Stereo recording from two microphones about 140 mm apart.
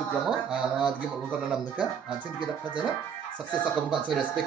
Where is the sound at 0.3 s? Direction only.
5° right (ahead or behind).